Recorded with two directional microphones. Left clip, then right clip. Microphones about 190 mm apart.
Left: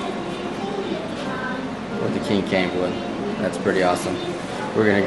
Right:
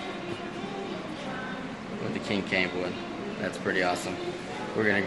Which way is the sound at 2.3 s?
10° left (ahead or behind).